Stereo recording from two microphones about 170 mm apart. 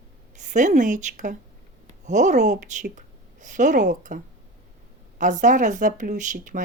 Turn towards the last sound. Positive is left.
turn(degrees=-50)  # may be behind; listen again after turning